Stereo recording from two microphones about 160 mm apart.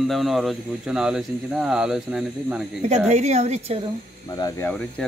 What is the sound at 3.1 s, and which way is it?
Speech, 45° right (ahead or behind).